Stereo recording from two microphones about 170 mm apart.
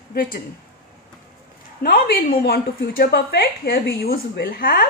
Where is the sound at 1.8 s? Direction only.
65° left (ahead or behind).